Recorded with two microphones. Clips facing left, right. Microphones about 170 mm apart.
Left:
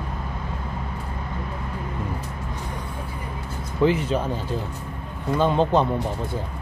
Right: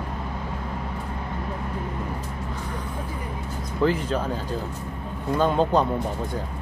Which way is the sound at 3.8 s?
10° left (ahead or behind).